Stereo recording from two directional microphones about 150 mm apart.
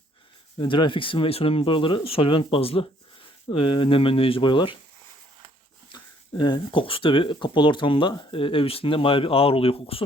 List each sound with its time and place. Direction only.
0.6 s speech: 35° left (ahead or behind)
5.9 s speech: 30° left (ahead or behind)